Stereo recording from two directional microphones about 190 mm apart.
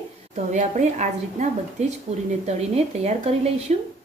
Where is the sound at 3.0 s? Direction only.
35° right (ahead or behind).